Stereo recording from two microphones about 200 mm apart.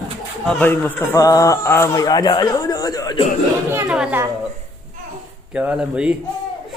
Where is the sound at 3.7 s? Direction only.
5° right (ahead or behind).